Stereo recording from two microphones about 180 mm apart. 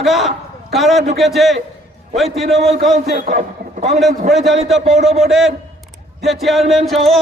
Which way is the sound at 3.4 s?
35° right (ahead or behind).